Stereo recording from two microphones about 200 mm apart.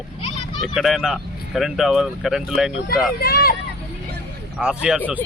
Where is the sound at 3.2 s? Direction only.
50° left (ahead or behind).